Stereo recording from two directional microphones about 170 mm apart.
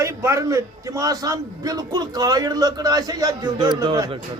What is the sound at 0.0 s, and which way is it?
Speech, 20° right (ahead or behind).